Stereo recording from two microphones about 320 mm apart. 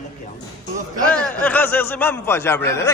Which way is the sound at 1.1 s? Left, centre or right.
Centre.